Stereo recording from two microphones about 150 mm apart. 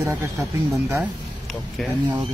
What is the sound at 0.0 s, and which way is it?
Speech, 15° right (ahead or behind).